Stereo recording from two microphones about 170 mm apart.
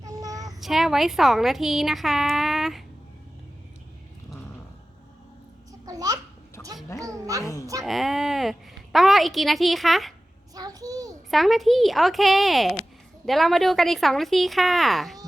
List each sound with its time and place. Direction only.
0.0 s child singing: 20° right (ahead or behind)
0.6 s a woman's voice: centre (ahead or behind)
5.8 s babbling: 20° right (ahead or behind)
6.6 s a sound: 15° left (ahead or behind)
7.0 s a child's voice: 20° right (ahead or behind)
7.4 s a woman's voice: 20° left (ahead or behind)
7.9 s a woman's voice: centre (ahead or behind)
10.5 s a sound: 20° right (ahead or behind)
11.3 s a woman's voice: centre (ahead or behind)